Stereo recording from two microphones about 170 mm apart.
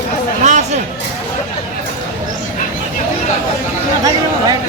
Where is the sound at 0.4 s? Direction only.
45° right (ahead or behind).